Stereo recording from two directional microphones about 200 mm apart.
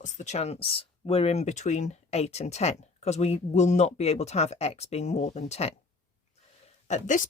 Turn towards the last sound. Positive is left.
turn(degrees=40)  # may be behind; listen again after turning